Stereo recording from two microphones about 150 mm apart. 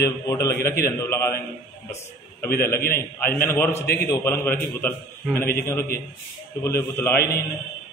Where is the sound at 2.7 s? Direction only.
90° left.